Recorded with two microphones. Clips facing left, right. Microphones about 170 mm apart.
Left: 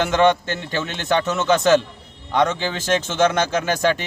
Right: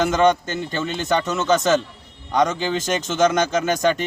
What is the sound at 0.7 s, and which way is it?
Speech, 5° left (ahead or behind).